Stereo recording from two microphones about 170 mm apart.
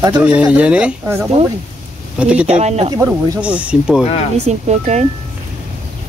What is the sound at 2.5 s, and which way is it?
Speech, 40° right (ahead or behind).